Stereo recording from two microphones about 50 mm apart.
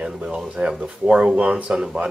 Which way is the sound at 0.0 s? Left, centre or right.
Centre.